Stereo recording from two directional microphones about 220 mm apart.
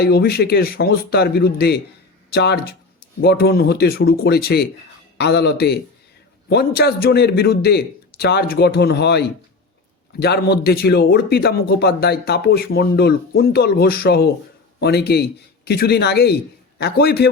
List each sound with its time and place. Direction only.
0.0 s a man's voice: 45° left (ahead or behind)